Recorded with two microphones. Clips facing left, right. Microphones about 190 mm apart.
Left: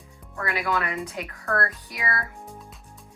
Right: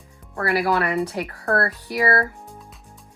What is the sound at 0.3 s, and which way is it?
Speech, 35° right (ahead or behind).